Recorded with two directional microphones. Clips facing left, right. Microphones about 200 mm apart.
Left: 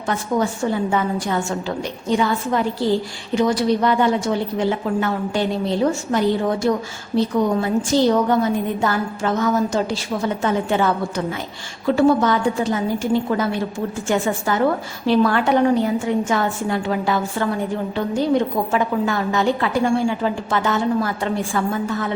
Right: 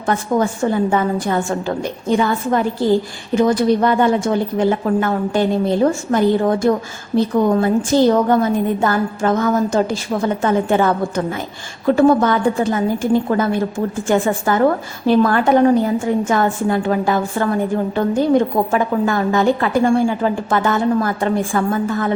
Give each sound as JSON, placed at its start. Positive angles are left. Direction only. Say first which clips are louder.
{"t": 0.0, "sound": "a woman's voice", "louder": "right 3 dB", "side_deg": -50}